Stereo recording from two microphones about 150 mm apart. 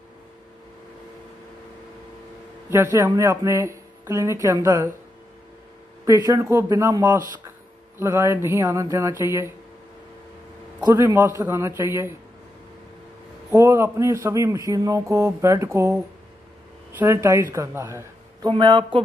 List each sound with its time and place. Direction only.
2.7 s speech: 15° right (ahead or behind)
6.0 s speech: 20° right (ahead or behind)
10.8 s speech: 25° right (ahead or behind)
13.5 s speech: 20° right (ahead or behind)
17.0 s a woman's voice: 20° right (ahead or behind)
18.5 s speech: 35° right (ahead or behind)